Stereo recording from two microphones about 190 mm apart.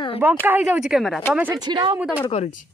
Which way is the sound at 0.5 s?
10° right (ahead or behind).